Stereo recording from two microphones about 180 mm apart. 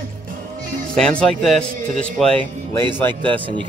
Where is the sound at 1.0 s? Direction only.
5° left (ahead or behind).